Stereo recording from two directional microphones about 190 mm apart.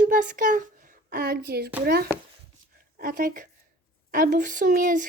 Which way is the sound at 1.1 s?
55° right (ahead or behind).